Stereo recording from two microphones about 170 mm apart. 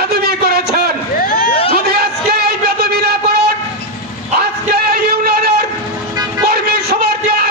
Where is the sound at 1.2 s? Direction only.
55° left (ahead or behind).